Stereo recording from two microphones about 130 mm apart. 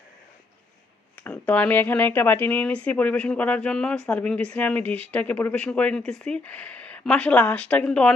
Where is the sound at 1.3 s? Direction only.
10° left (ahead or behind).